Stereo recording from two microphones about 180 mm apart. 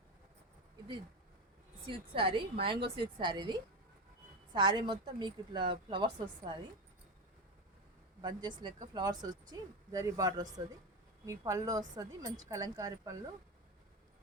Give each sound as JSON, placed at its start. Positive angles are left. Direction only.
{"t": 1.9, "sound": "a woman's voice", "side_deg": -30}
{"t": 8.2, "sound": "a woman's voice", "side_deg": -25}